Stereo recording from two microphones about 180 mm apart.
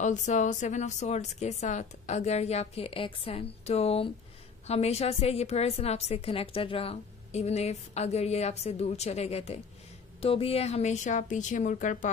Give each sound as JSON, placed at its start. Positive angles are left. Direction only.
{"t": 0.0, "sound": "a woman's voice", "side_deg": 40}